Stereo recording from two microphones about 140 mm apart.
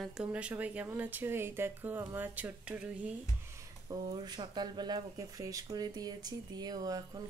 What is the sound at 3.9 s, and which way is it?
Speech, 35° right (ahead or behind).